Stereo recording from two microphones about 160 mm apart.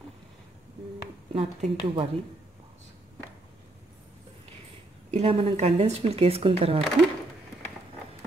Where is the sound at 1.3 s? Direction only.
35° right (ahead or behind).